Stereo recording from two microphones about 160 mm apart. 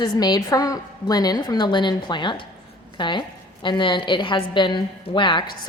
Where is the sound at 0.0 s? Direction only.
25° left (ahead or behind).